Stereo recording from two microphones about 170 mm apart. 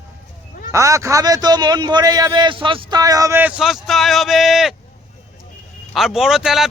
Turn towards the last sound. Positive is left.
turn(degrees=-5)  # may be behind; listen again after turning